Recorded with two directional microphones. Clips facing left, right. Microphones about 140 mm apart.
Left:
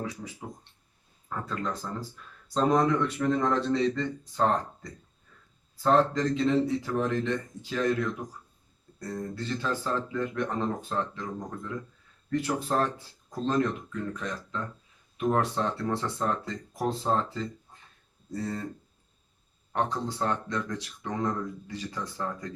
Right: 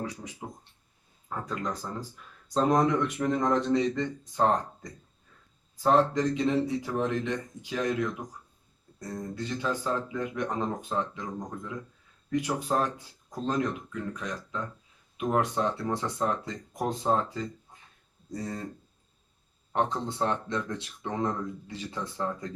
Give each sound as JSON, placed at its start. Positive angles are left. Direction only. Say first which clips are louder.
{"t": 1.3, "sound": "speech", "louder": "even", "side_deg": -15}
{"t": 5.7, "sound": "speech", "louder": "even", "side_deg": -15}
{"t": 9.3, "sound": "speech", "louder": "right 2 dB", "side_deg": -15}
{"t": 19.7, "sound": "speech", "louder": "right 1 dB", "side_deg": -20}